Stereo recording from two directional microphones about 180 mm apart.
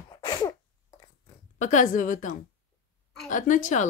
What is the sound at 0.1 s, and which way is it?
Sneeze, 20° left (ahead or behind).